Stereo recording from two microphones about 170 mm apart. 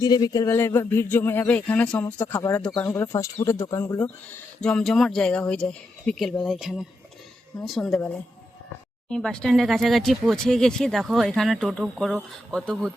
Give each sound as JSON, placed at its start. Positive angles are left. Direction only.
{"t": 0.0, "sound": "speech", "side_deg": 25}